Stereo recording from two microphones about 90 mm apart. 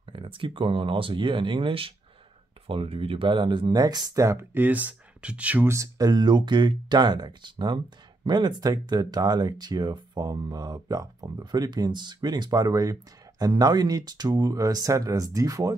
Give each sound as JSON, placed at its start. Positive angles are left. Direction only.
{"t": 0.1, "sound": "speech", "side_deg": -75}
{"t": 4.6, "sound": "speech", "side_deg": -20}
{"t": 5.7, "sound": "speech", "side_deg": -40}